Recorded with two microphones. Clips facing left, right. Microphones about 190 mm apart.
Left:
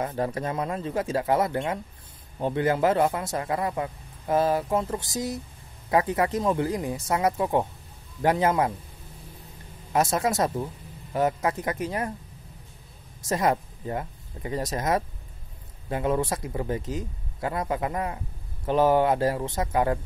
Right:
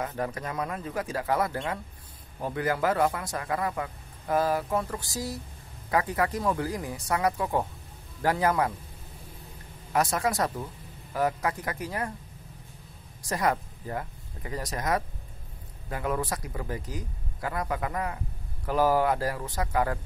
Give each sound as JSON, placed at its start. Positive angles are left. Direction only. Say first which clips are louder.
{"t": 0.0, "sound": "speech", "louder": "left 4 dB", "side_deg": 30}
{"t": 9.9, "sound": "speech", "louder": "left 3 dB", "side_deg": 25}
{"t": 13.3, "sound": "speech", "louder": "left 3 dB", "side_deg": 25}